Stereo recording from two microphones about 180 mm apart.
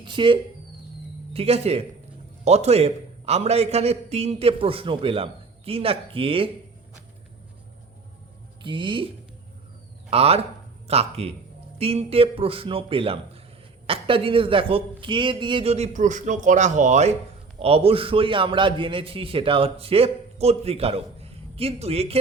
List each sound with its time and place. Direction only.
0.0 s a man's voice: 25° right (ahead or behind)
8.6 s a man's voice: 25° right (ahead or behind)